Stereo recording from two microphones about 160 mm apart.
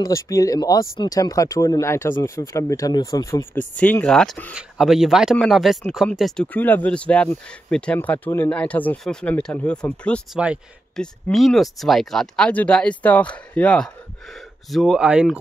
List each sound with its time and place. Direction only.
0.0 s speech: 20° left (ahead or behind)
10.3 s speech: 5° right (ahead or behind)
11.0 s speech: 5° left (ahead or behind)